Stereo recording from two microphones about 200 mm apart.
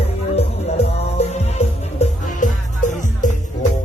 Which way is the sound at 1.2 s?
35° left (ahead or behind).